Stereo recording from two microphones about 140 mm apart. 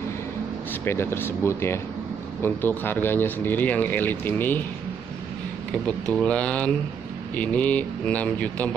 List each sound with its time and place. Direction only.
0.8 s speech: 15° left (ahead or behind)
5.9 s speech: 5° left (ahead or behind)